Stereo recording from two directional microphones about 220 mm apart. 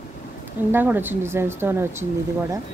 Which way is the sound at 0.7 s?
10° right (ahead or behind).